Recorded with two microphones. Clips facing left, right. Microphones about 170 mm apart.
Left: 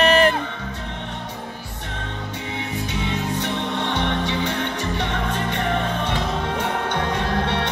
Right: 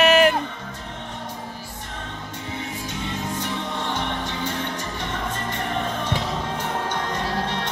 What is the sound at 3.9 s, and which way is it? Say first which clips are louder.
Music: left 5 dB; 65° left (ahead or behind).